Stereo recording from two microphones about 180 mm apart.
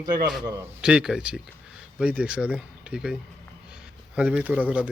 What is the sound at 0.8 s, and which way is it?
Speech, 5° right (ahead or behind).